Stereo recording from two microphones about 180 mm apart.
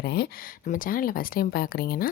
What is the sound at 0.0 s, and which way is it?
Speech, 65° left (ahead or behind).